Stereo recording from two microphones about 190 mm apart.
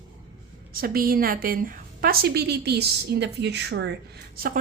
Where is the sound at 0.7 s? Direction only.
50° right (ahead or behind).